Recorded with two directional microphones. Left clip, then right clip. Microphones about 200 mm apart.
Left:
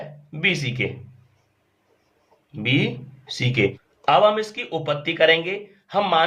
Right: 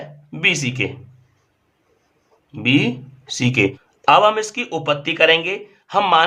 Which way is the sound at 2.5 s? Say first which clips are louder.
Right 5 dB; 25° right (ahead or behind).